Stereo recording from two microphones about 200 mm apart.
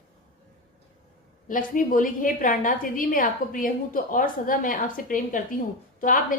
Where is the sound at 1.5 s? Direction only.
40° left (ahead or behind).